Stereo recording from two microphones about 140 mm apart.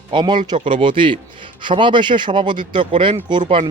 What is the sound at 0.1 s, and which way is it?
A man's voice, 35° right (ahead or behind).